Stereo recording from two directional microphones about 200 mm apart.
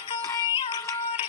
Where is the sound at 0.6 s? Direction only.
20° left (ahead or behind).